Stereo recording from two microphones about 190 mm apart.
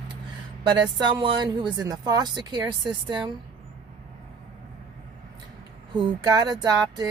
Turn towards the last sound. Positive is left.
turn(degrees=-20)  # may be behind; listen again after turning